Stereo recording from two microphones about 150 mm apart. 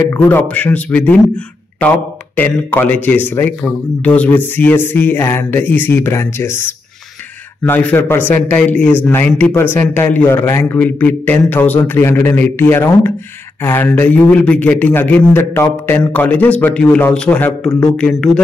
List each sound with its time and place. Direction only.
0.1 s a man's voice: 10° left (ahead or behind)
17.5 s a man's voice: 25° left (ahead or behind)
17.8 s speech: 5° left (ahead or behind)